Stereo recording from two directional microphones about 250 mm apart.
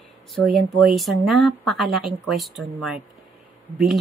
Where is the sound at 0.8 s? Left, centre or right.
Centre.